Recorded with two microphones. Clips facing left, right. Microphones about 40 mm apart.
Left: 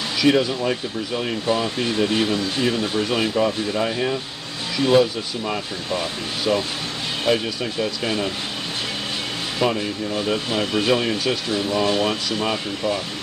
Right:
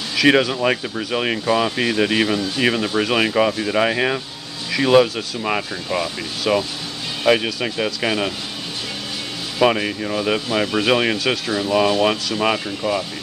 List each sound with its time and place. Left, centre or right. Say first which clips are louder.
0.2 s speech: right 3 dB; right
1.5 s speech: right 3 dB; right
4.8 s speech: right 3 dB; right
9.6 s speech: right 5 dB; right
11.5 s speech: right 4 dB; right